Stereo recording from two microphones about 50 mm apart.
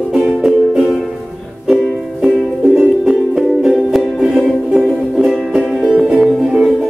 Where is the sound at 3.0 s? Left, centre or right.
Centre.